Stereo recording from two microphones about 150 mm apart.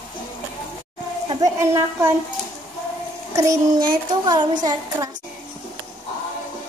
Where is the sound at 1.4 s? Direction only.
20° right (ahead or behind).